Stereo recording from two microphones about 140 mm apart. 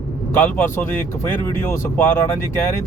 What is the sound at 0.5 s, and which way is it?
Speech, 15° left (ahead or behind).